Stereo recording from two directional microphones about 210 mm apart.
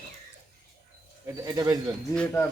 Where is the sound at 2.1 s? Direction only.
5° left (ahead or behind).